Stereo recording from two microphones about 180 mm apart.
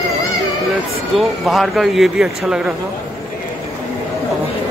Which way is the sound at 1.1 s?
Centre (ahead or behind).